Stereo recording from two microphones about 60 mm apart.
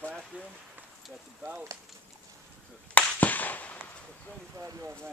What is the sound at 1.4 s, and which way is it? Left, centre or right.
Speech, right.